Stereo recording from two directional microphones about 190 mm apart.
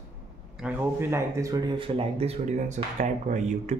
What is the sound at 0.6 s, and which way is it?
Speech, 10° right (ahead or behind).